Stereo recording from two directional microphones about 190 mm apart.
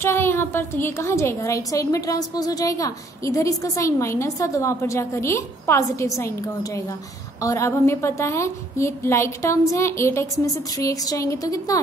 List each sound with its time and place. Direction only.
0.0 s a woman's voice: 15° left (ahead or behind)